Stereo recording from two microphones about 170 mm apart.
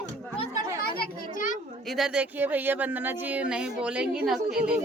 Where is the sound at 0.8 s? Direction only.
60° left (ahead or behind).